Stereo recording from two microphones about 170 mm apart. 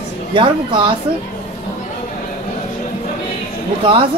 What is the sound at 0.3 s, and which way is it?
Speech, 30° right (ahead or behind).